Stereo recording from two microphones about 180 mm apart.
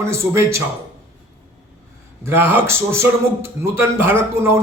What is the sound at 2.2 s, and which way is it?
A man's voice, 10° right (ahead or behind).